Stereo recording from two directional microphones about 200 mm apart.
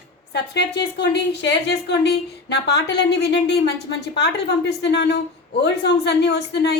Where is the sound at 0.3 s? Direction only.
55° left (ahead or behind).